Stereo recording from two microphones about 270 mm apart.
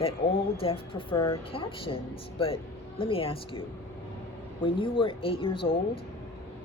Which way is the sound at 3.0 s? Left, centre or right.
Centre.